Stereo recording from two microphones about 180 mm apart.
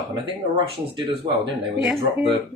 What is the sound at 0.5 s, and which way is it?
Speech, 25° right (ahead or behind).